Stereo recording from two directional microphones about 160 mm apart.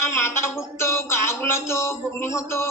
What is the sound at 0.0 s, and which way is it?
Speech, 15° left (ahead or behind).